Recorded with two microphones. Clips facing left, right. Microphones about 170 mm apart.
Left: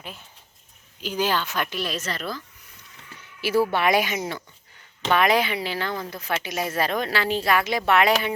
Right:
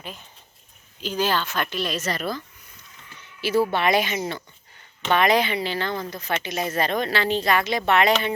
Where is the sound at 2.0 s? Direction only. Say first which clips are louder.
Right 4 dB; 15° right (ahead or behind).